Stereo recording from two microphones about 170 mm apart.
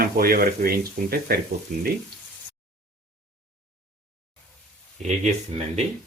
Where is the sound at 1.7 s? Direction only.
50° right (ahead or behind).